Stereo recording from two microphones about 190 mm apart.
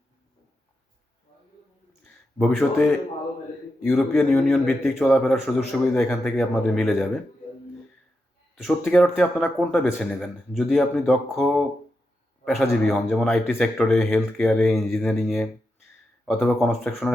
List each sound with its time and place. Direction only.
2.4 s speech: 5° left (ahead or behind)
8.5 s speech: centre (ahead or behind)
12.7 s speech: centre (ahead or behind)